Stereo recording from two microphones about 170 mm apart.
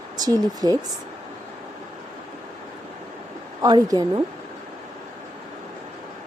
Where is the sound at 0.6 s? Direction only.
20° right (ahead or behind).